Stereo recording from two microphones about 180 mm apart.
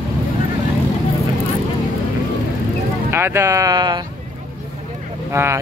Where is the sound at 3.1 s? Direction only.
15° right (ahead or behind).